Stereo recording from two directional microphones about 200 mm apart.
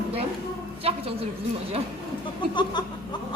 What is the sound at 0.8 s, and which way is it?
Speech, 30° right (ahead or behind).